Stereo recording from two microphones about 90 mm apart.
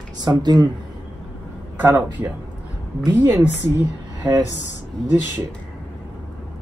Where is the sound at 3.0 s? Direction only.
45° right (ahead or behind).